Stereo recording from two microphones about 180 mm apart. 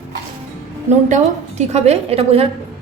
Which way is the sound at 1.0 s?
40° right (ahead or behind).